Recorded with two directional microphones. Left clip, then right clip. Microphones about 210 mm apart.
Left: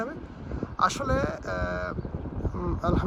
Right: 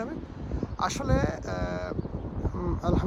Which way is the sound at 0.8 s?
15° right (ahead or behind).